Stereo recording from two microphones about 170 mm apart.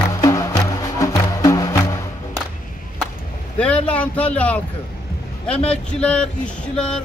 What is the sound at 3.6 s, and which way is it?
Vehicle, 5° left (ahead or behind).